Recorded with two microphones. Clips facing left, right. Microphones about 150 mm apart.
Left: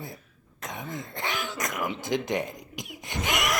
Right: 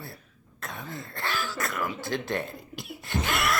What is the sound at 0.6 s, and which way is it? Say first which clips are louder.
Throat clearing: left 2 dB; 20° left (ahead or behind).